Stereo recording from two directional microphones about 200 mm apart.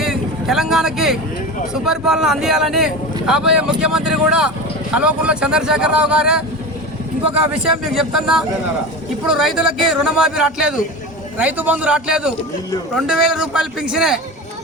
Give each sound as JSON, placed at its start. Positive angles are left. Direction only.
{"t": 0.0, "sound": "speech", "side_deg": 0}
{"t": 7.9, "sound": "a man's voice", "side_deg": -5}